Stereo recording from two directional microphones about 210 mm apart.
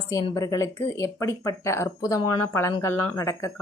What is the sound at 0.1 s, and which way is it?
Speech, 15° left (ahead or behind).